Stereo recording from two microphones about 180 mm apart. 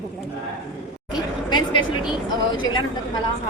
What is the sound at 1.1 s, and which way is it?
Chatter, 25° left (ahead or behind).